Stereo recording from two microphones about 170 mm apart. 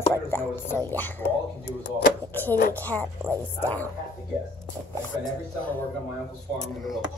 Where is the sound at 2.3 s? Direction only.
10° left (ahead or behind).